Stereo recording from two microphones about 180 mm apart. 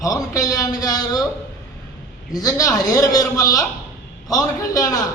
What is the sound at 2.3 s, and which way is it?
Speech, 20° left (ahead or behind).